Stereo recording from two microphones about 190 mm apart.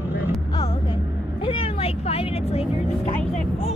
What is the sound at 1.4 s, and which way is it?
Vehicle, 30° left (ahead or behind).